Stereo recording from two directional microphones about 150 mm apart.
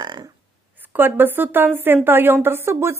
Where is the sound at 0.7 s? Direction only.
10° right (ahead or behind).